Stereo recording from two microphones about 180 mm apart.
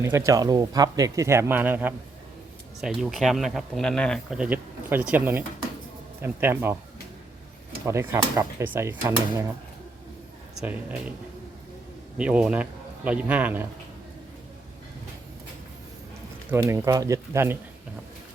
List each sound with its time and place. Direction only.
0.0 s speech: 15° right (ahead or behind)
7.9 s speech: 15° right (ahead or behind)
10.6 s speech: 10° right (ahead or behind)
12.1 s speech: 5° right (ahead or behind)
16.5 s speech: 15° right (ahead or behind)